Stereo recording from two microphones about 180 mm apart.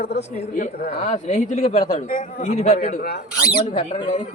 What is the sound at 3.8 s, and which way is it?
Speech, 35° left (ahead or behind).